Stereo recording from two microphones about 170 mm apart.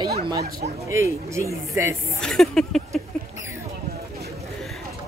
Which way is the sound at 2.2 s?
5° left (ahead or behind).